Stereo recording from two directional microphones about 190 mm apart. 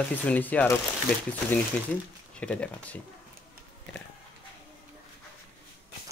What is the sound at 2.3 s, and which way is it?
Speech, 5° left (ahead or behind).